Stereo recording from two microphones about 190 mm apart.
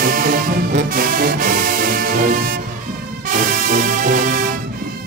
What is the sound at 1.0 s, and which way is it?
Music, 50° right (ahead or behind).